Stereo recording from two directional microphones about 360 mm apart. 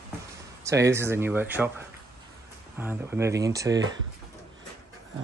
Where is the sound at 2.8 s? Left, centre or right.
Centre.